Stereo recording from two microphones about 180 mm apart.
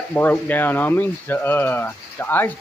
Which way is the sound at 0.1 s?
10° left (ahead or behind).